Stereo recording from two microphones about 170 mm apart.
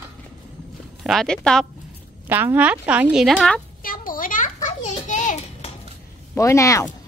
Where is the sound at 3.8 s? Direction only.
55° left (ahead or behind).